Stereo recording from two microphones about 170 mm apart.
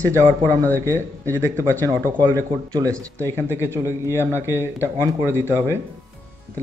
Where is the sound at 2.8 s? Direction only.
10° left (ahead or behind).